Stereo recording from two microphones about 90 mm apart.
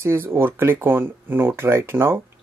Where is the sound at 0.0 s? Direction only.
25° right (ahead or behind).